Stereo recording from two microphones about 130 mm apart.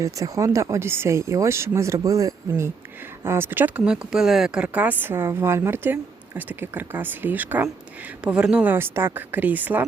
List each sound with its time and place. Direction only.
0.0 s speech: 25° right (ahead or behind)